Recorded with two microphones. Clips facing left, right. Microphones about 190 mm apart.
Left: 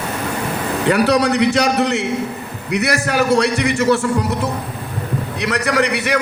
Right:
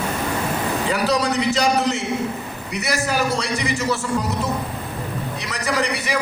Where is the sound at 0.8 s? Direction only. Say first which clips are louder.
Left 8 dB; 65° left (ahead or behind).